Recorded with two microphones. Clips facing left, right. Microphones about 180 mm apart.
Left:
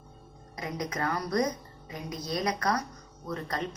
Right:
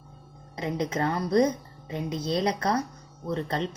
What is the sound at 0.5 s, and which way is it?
Speech, 25° right (ahead or behind).